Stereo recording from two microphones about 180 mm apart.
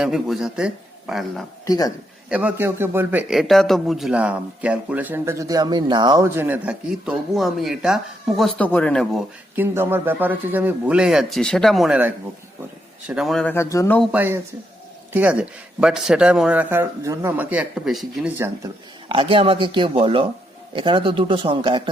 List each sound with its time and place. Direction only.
0.0 s a man's voice: centre (ahead or behind)
1.6 s speech: 20° left (ahead or behind)
2.3 s a man's voice: 10° right (ahead or behind)
9.6 s a man's voice: 10° right (ahead or behind); by 14.0 s 15° left (ahead or behind)
14.0 s a man's voice: 10° right (ahead or behind)
18.3 s a man's voice: 15° right (ahead or behind)
19.0 s speech: 30° right (ahead or behind)